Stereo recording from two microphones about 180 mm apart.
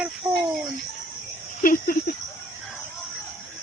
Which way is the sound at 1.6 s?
50° left (ahead or behind).